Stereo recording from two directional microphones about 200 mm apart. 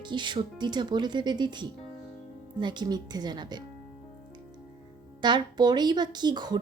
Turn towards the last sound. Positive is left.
turn(degrees=-20)  # may be behind; listen again after turning